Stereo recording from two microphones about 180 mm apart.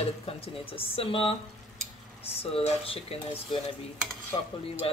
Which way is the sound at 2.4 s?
35° left (ahead or behind).